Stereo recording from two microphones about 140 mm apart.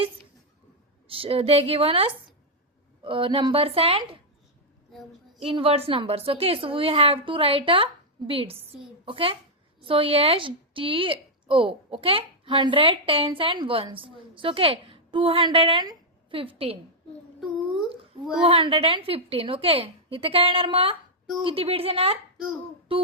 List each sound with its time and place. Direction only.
1.0 s a woman's voice: 40° right (ahead or behind)
5.4 s a woman's voice: 40° right (ahead or behind)
18.4 s a woman's voice: 40° right (ahead or behind)
22.9 s a sound: 40° right (ahead or behind)